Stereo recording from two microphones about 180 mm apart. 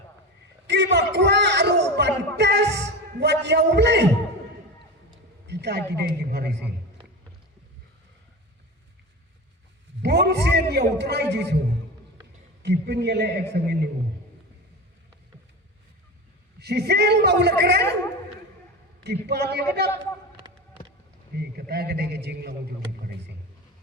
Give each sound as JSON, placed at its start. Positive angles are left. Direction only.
{"t": 0.7, "sound": "a sound", "side_deg": -70}
{"t": 3.7, "sound": "a man's voice", "side_deg": -70}
{"t": 5.5, "sound": "a man's voice", "side_deg": -65}
{"t": 10.0, "sound": "a man's voice", "side_deg": -65}
{"t": 12.6, "sound": "a man's voice", "side_deg": -65}
{"t": 16.6, "sound": "a man's voice", "side_deg": -65}
{"t": 19.0, "sound": "a man's voice", "side_deg": -65}
{"t": 21.3, "sound": "a man's voice", "side_deg": -60}